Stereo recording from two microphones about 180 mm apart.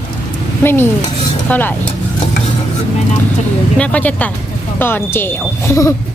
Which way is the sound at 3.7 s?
5° left (ahead or behind).